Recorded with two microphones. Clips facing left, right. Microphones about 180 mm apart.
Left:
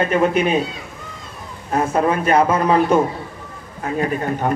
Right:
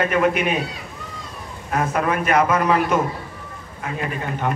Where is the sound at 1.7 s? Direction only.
30° left (ahead or behind).